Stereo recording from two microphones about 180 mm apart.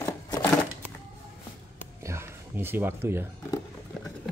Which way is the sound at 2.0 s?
15° right (ahead or behind).